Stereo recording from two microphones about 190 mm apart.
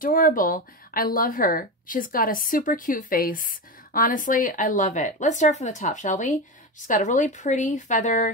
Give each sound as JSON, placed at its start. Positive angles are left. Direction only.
{"t": 0.0, "sound": "speech", "side_deg": 45}